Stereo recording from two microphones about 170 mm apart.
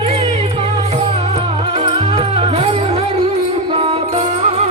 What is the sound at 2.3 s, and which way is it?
Music, 35° right (ahead or behind).